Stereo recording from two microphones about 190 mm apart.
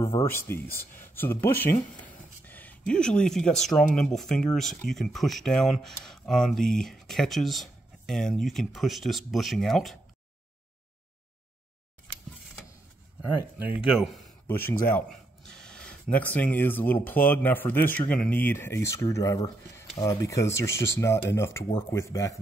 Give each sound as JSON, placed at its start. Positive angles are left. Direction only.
{"t": 0.2, "sound": "speech", "side_deg": 10}
{"t": 13.6, "sound": "speech", "side_deg": -5}
{"t": 14.5, "sound": "speech", "side_deg": 10}